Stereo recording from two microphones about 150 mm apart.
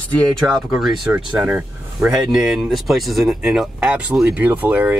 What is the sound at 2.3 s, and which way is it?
Speech, centre (ahead or behind).